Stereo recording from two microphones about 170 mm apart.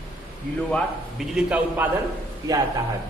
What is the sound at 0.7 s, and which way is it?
A man's voice, 5° left (ahead or behind).